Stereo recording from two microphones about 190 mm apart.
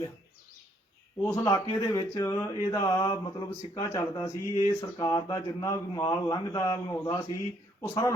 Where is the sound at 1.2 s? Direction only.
15° left (ahead or behind).